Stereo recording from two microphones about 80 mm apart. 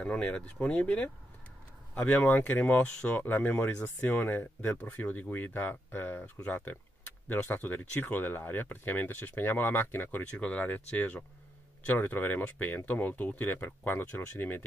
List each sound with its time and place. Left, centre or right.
0.0 s speech: centre
10.2 s speech: centre